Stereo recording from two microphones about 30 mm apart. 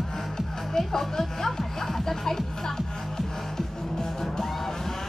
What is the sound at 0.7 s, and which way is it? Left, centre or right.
Speech, centre.